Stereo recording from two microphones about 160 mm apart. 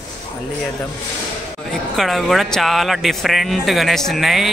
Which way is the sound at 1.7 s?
Centre (ahead or behind).